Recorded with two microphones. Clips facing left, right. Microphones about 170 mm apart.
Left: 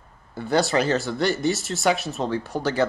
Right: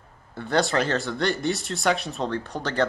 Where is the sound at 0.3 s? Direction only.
5° left (ahead or behind).